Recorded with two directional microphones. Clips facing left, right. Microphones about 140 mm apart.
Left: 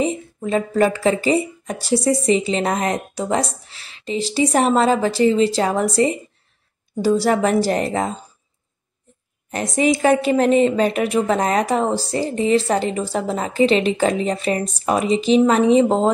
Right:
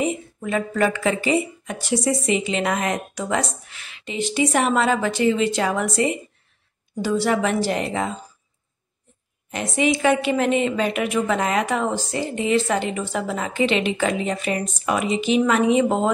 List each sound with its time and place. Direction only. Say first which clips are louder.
0.0 s a woman's voice: left 3 dB; 30° left (ahead or behind)
9.5 s a woman's voice: left 3 dB; 40° left (ahead or behind)